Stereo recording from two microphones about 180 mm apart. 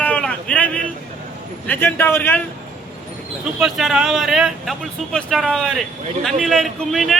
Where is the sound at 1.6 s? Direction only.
10° left (ahead or behind).